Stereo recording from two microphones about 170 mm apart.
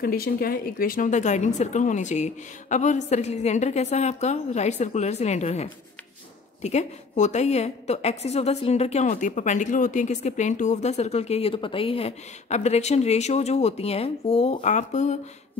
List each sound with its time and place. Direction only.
0.0 s a woman's voice: 65° left (ahead or behind); by 15.1 s 45° left (ahead or behind)